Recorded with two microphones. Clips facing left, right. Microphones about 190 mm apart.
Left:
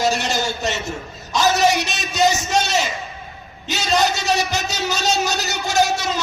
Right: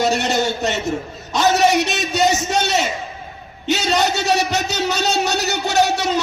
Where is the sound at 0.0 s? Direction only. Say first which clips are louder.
Right 3 dB; 60° right (ahead or behind).